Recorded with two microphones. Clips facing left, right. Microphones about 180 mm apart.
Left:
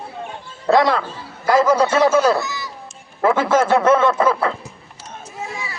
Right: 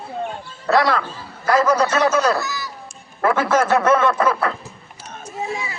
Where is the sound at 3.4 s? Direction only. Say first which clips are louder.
Left 1 dB; 25° left (ahead or behind).